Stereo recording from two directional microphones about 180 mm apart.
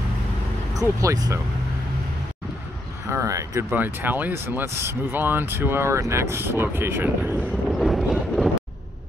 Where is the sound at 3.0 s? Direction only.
15° right (ahead or behind); by 8.5 s centre (ahead or behind).